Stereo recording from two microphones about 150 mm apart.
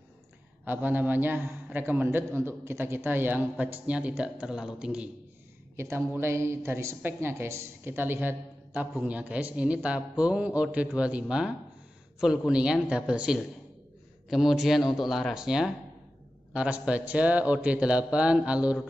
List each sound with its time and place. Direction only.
0.7 s a man's voice: 10° right (ahead or behind)
5.8 s a man's voice: 15° right (ahead or behind)